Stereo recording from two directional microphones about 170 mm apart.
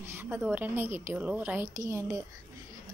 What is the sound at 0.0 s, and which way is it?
A woman's voice, 15° right (ahead or behind).